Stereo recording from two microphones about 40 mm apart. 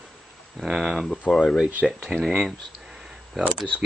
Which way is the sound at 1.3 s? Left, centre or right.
Centre.